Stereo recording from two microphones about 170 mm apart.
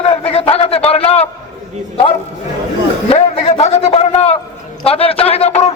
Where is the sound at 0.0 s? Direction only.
35° left (ahead or behind).